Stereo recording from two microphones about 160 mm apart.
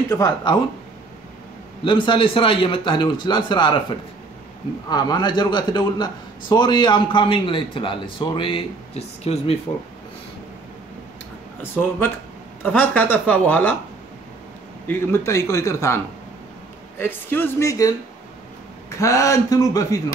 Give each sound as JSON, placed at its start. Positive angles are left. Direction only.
{"t": 0.1, "sound": "a man's voice", "side_deg": 25}
{"t": 1.9, "sound": "a man's voice", "side_deg": 30}
{"t": 4.8, "sound": "a man's voice", "side_deg": 25}
{"t": 11.6, "sound": "a woman's voice", "side_deg": 15}
{"t": 14.9, "sound": "a man's voice", "side_deg": 15}
{"t": 17.0, "sound": "a woman's voice", "side_deg": 15}